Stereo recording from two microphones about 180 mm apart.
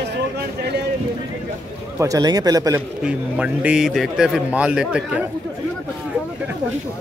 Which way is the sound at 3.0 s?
5° right (ahead or behind).